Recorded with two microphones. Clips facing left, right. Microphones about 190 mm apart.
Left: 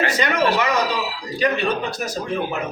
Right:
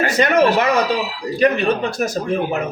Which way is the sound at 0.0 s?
50° right (ahead or behind).